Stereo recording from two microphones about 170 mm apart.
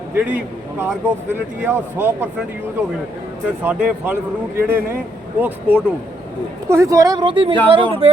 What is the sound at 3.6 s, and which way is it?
Speech, 10° right (ahead or behind).